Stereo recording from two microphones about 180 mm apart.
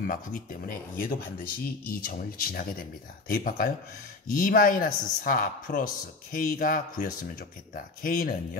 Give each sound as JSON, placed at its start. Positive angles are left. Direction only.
{"t": 0.0, "sound": "speech", "side_deg": 50}